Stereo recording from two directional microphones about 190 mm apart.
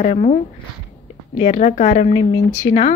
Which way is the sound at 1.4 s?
35° left (ahead or behind).